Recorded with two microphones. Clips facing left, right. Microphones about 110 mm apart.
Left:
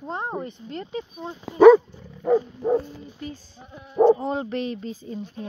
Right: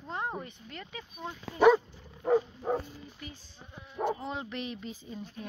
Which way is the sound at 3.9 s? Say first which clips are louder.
Left 15 dB; 40° left (ahead or behind).